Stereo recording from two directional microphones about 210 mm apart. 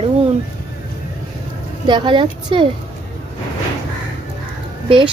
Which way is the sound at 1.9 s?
20° right (ahead or behind).